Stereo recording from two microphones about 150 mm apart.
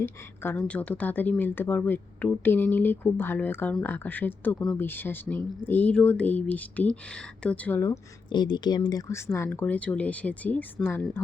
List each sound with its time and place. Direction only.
0.0 s speech: 15° left (ahead or behind)
7.9 s speech: 30° left (ahead or behind); by 11.2 s 15° left (ahead or behind)